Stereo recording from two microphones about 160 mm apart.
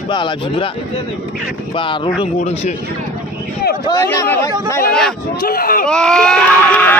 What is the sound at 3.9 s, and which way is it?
Speech, 20° left (ahead or behind).